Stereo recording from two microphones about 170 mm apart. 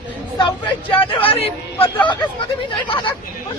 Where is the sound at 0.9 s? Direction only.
30° left (ahead or behind).